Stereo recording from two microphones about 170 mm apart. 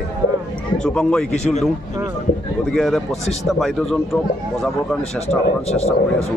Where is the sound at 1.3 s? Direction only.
40° left (ahead or behind).